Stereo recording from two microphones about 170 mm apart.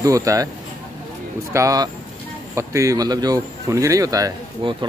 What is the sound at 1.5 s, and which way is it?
Speech, 20° right (ahead or behind).